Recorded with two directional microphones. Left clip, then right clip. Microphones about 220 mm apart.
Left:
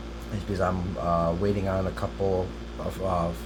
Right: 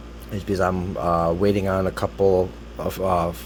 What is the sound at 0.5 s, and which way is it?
Speech, 45° right (ahead or behind).